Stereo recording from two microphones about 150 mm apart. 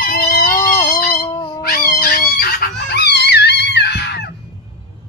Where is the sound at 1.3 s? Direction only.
30° left (ahead or behind).